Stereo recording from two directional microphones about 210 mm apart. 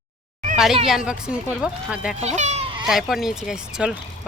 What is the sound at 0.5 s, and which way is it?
Speech, centre (ahead or behind).